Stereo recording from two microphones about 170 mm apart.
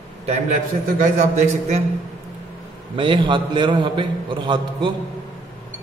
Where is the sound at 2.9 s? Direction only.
30° right (ahead or behind).